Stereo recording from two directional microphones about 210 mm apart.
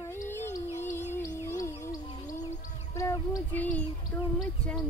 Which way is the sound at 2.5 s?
35° left (ahead or behind).